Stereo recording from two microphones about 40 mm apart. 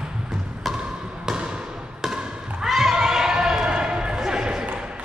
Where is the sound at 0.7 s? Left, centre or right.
Centre.